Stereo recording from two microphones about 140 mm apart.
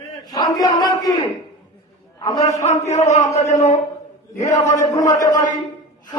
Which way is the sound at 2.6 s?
55° left (ahead or behind).